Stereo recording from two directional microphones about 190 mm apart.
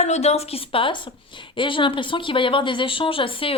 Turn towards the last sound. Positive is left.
turn(degrees=30)  # may be behind; listen again after turning